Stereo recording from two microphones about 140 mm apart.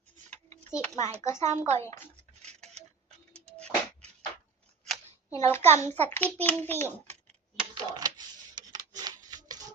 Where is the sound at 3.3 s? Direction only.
50° right (ahead or behind).